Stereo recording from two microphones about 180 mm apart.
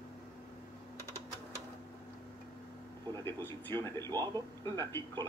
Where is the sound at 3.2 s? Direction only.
15° left (ahead or behind).